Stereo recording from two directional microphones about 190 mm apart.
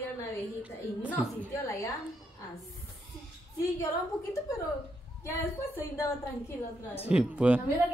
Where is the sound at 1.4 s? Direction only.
15° left (ahead or behind).